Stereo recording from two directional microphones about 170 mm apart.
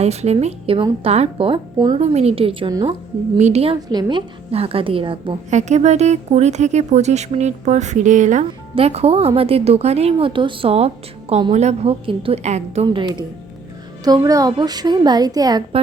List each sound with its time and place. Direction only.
0.0 s a woman's voice: 40° right (ahead or behind)
2.0 s a woman's voice: 40° right (ahead or behind)
3.3 s a woman's voice: 40° right (ahead or behind)
3.8 s a woman's voice: 25° right (ahead or behind)
5.5 s a woman's voice: 45° right (ahead or behind)
14.0 s a woman's voice: 20° right (ahead or behind)